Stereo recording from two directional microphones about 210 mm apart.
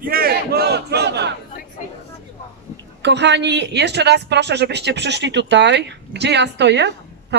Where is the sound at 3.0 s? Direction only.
55° right (ahead or behind).